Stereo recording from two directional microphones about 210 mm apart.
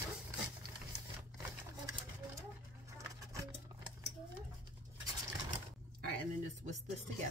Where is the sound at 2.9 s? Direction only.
15° right (ahead or behind).